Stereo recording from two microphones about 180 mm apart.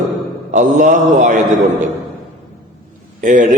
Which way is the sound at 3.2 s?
50° right (ahead or behind).